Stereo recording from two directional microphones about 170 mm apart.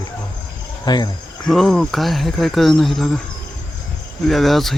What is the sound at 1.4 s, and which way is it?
Speech, centre (ahead or behind).